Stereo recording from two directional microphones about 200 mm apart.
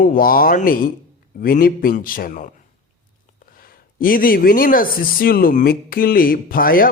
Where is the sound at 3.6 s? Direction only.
45° left (ahead or behind).